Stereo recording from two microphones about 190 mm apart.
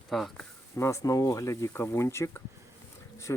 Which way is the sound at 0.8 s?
15° left (ahead or behind).